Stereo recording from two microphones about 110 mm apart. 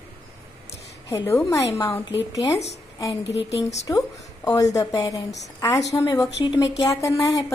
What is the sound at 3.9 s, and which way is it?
A woman's voice, 30° left (ahead or behind).